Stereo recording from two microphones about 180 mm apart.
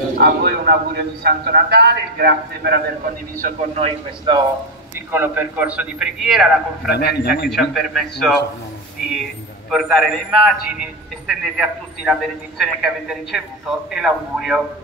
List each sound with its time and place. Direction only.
0.2 s a man's voice: 60° right (ahead or behind)
3.3 s a man's voice: 40° right (ahead or behind)
5.1 s a man's voice: 10° right (ahead or behind)
6.9 s a man's voice: 60° left (ahead or behind)
7.4 s a man's voice: centre (ahead or behind)
9.7 s a man's voice: centre (ahead or behind)